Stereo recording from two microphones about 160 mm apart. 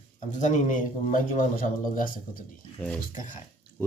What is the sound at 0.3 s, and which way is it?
Speech, 50° left (ahead or behind).